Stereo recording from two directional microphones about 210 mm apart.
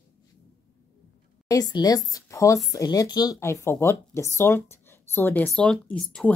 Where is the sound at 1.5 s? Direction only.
20° left (ahead or behind).